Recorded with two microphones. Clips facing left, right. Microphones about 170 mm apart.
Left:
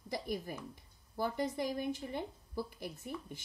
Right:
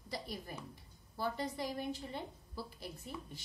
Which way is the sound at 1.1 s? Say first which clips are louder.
Left 3 dB; 20° left (ahead or behind).